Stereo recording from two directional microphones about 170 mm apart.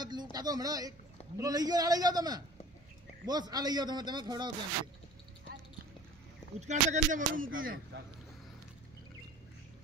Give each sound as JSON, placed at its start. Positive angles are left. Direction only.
{"t": 0.0, "sound": "a man's voice", "side_deg": -25}
{"t": 6.6, "sound": "speech", "side_deg": -45}